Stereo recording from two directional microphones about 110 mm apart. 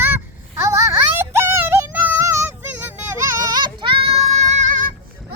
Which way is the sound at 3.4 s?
40° right (ahead or behind).